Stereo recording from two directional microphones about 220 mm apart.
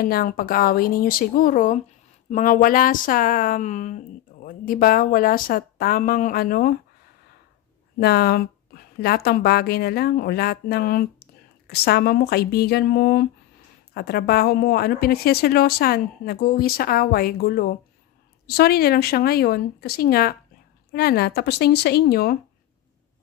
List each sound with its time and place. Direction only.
0.0 s speech: 40° left (ahead or behind)
8.0 s a woman's voice: 45° left (ahead or behind)